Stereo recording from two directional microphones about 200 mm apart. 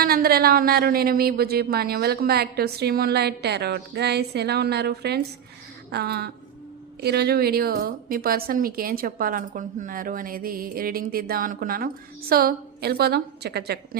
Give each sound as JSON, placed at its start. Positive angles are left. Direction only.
{"t": 0.0, "sound": "speech", "side_deg": -50}